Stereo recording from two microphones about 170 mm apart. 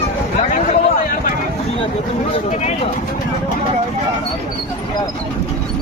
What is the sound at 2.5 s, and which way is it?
Speech, 40° left (ahead or behind).